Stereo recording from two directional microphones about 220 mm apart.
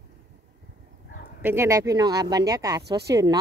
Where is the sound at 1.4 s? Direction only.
10° right (ahead or behind).